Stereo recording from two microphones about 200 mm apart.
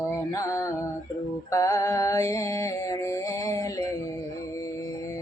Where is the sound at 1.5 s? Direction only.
15° left (ahead or behind).